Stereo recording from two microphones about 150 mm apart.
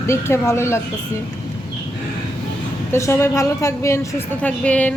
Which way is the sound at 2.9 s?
20° left (ahead or behind).